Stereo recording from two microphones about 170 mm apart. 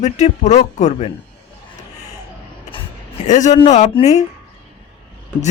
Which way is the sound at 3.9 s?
40° left (ahead or behind).